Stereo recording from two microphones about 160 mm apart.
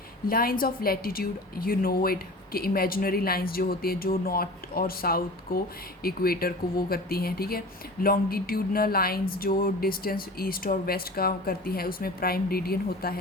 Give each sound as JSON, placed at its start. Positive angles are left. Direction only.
{"t": 0.3, "sound": "a woman's voice", "side_deg": 65}